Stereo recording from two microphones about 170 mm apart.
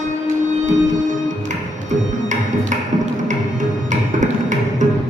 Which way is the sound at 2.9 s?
45° right (ahead or behind).